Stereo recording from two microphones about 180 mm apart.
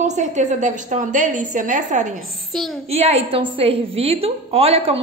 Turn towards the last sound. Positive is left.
turn(degrees=-30)  # may be behind; listen again after turning